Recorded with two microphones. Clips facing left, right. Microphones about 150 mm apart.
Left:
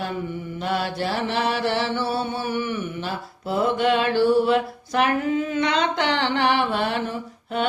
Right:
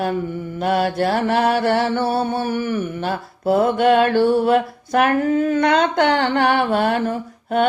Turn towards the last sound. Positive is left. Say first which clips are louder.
# right 6 dB
turn(degrees=-50)  # may be behind; listen again after turning